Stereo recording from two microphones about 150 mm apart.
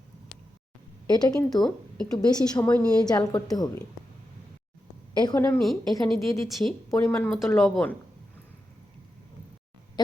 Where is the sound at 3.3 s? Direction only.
25° left (ahead or behind).